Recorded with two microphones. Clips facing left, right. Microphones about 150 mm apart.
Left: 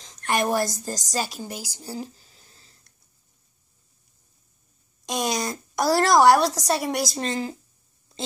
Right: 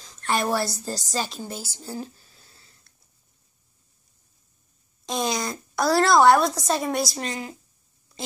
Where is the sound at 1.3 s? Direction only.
10° left (ahead or behind).